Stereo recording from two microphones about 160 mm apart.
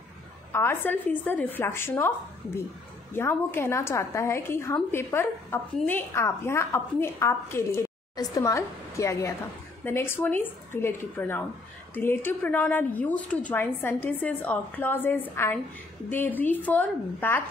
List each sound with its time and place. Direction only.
0.5 s a woman's voice: 15° left (ahead or behind)